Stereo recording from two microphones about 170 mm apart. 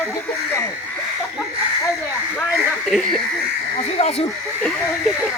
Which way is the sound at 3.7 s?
35° left (ahead or behind).